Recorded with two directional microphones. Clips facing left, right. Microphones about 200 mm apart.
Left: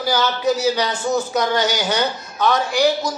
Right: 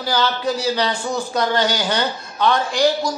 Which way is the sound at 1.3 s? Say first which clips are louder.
Even; 10° left (ahead or behind).